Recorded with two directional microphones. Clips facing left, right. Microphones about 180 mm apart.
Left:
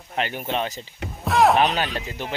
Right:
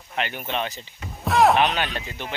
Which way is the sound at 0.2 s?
40° left (ahead or behind).